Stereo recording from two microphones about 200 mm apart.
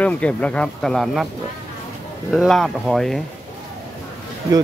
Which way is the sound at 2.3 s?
Centre (ahead or behind).